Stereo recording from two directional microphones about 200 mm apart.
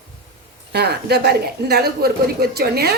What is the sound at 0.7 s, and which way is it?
A woman's voice, 55° right (ahead or behind).